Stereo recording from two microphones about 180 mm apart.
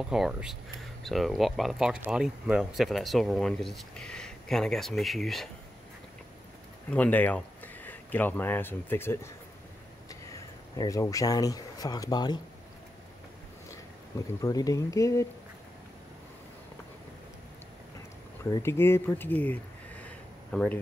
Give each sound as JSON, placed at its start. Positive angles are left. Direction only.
{"t": 0.0, "sound": "speech", "side_deg": -5}
{"t": 6.9, "sound": "speech", "side_deg": 10}
{"t": 13.7, "sound": "speech", "side_deg": 20}
{"t": 18.4, "sound": "speech", "side_deg": 15}